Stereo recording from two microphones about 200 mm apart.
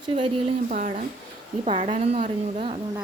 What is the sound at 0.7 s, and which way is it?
Speech, 40° right (ahead or behind).